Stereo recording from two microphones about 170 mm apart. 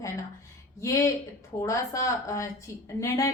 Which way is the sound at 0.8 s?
20° left (ahead or behind).